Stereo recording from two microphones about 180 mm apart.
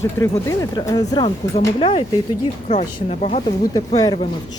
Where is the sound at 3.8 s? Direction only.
20° left (ahead or behind).